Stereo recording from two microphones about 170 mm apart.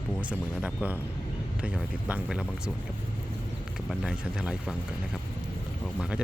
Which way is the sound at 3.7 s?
5° right (ahead or behind).